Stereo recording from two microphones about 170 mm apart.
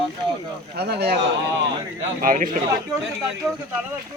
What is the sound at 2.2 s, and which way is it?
Speech, 55° right (ahead or behind).